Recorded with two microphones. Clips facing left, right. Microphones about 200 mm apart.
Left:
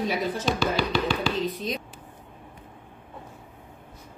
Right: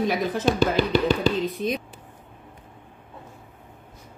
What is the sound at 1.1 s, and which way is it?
Speech, 40° right (ahead or behind).